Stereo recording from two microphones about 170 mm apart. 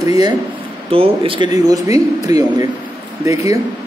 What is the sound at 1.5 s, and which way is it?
Speech, 20° right (ahead or behind).